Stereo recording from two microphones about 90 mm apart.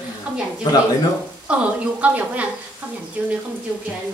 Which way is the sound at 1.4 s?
15° right (ahead or behind).